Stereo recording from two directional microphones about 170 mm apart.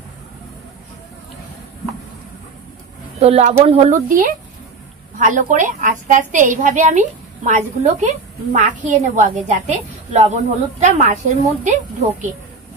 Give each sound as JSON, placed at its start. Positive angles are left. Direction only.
{"t": 3.2, "sound": "speech", "side_deg": -40}
{"t": 5.2, "sound": "a woman's voice", "side_deg": -50}